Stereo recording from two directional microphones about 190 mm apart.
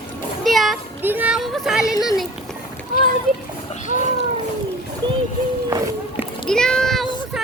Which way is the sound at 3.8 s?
40° left (ahead or behind).